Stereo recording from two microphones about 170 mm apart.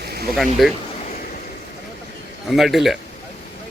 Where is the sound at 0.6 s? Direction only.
Centre (ahead or behind).